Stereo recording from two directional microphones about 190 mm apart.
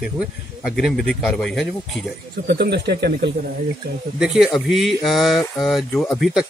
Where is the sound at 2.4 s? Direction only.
55° right (ahead or behind).